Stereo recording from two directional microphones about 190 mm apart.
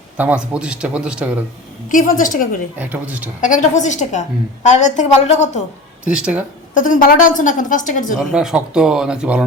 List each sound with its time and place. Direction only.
0.2 s a man's voice: 5° right (ahead or behind)
1.9 s a woman's voice: 45° left (ahead or behind)
2.7 s speech: 10° right (ahead or behind)
3.4 s a woman's voice: 40° left (ahead or behind)
6.1 s a man's voice: 5° right (ahead or behind)
6.7 s a woman's voice: 45° left (ahead or behind)
8.3 s a man's voice: 5° right (ahead or behind)